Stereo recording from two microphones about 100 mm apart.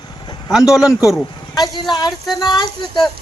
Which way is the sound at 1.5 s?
45° left (ahead or behind).